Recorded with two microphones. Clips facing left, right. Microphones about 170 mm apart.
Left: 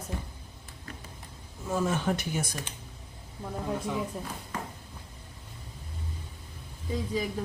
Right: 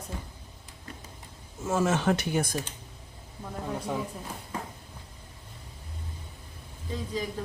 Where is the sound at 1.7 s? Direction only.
85° right.